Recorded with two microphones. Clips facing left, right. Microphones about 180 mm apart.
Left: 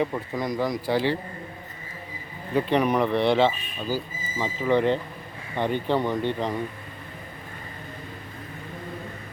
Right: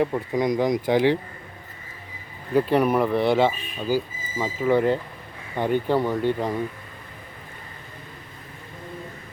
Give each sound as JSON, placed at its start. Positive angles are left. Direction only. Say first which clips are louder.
{"t": 0.0, "sound": "speech", "louder": "right 4 dB", "side_deg": -15}
{"t": 2.6, "sound": "speech", "louder": "right 2 dB", "side_deg": -5}